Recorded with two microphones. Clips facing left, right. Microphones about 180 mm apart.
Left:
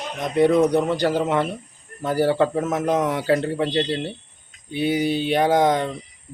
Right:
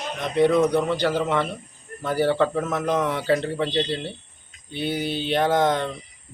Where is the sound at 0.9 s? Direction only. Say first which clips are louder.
Left 2 dB; 40° left (ahead or behind).